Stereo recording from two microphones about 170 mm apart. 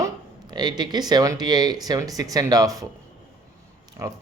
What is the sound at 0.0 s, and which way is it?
Speech, 25° right (ahead or behind).